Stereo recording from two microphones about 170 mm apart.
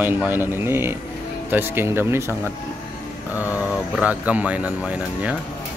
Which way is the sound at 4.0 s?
10° right (ahead or behind).